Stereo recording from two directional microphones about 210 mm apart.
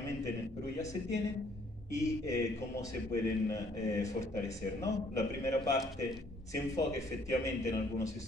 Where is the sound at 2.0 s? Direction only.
15° left (ahead or behind).